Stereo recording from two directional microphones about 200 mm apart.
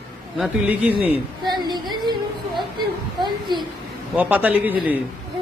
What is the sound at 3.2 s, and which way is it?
Speech, 20° right (ahead or behind).